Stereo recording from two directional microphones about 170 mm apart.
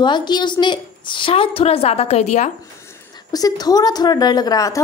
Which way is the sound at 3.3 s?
20° left (ahead or behind).